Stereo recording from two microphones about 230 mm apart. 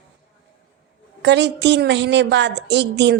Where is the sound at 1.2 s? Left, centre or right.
Right.